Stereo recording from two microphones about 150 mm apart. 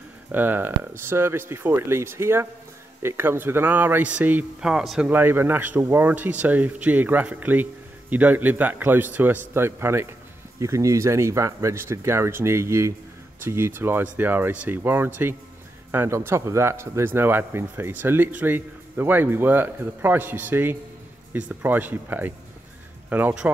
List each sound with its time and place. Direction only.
0.3 s speech: 15° right (ahead or behind)
5.1 s speech: 15° right (ahead or behind)